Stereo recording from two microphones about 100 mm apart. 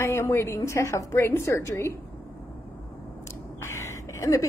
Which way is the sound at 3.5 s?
25° left (ahead or behind).